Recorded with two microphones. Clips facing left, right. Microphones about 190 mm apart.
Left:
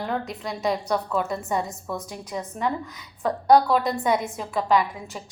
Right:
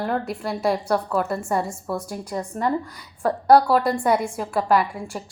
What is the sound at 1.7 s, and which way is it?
Speech, 30° right (ahead or behind).